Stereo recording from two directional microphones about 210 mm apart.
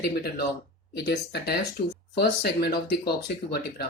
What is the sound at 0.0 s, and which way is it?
Speech, 50° left (ahead or behind).